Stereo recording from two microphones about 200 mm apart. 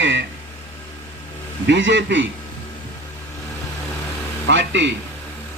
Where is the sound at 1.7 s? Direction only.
65° right (ahead or behind).